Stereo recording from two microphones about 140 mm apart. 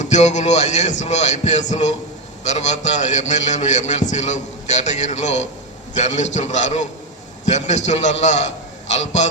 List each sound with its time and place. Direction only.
0.0 s a man's voice: 55° left (ahead or behind)